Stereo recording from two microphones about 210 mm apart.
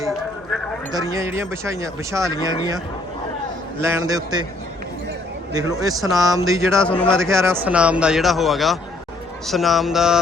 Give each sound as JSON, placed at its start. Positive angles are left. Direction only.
{"t": 0.9, "sound": "speech", "side_deg": -15}
{"t": 3.8, "sound": "speech", "side_deg": -15}
{"t": 5.5, "sound": "speech", "side_deg": -15}
{"t": 7.0, "sound": "speech", "side_deg": 5}
{"t": 7.4, "sound": "speech", "side_deg": -10}